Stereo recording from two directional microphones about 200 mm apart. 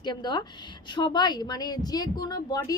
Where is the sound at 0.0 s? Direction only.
20° left (ahead or behind).